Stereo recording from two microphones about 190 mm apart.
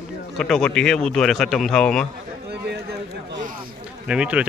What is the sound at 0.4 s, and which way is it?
A man's voice, 5° left (ahead or behind).